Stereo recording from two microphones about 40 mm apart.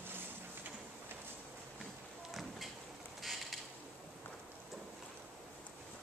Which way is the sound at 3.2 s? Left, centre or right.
Centre.